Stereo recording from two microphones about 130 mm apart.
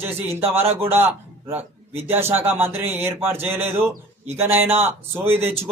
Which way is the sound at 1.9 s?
15° right (ahead or behind).